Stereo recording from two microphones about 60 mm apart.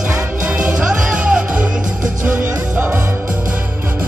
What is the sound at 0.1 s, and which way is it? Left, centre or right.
Music, right.